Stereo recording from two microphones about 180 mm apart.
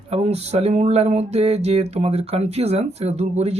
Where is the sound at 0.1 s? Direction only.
35° right (ahead or behind).